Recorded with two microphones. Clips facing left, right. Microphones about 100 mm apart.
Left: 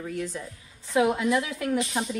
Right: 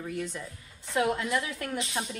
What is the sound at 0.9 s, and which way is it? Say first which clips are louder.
Speech: left 4 dB; 15° left (ahead or behind).